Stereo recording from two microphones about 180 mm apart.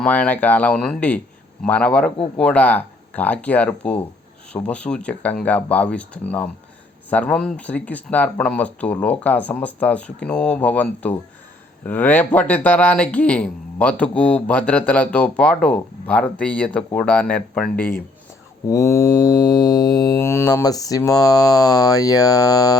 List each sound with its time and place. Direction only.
0.0 s speech: 5° left (ahead or behind)
18.7 s mantra: 15° left (ahead or behind)